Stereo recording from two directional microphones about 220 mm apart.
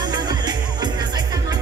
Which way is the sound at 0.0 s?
20° right (ahead or behind).